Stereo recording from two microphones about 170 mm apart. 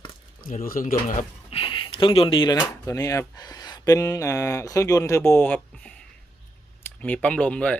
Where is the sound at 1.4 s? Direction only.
30° left (ahead or behind).